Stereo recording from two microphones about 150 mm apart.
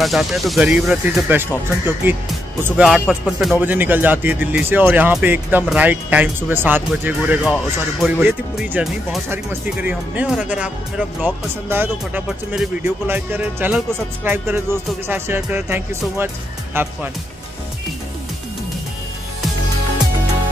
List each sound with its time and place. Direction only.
0.0 s a man's voice: centre (ahead or behind); by 16.9 s 15° right (ahead or behind)